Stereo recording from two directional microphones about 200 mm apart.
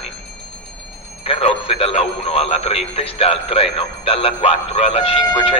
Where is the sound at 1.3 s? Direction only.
30° left (ahead or behind).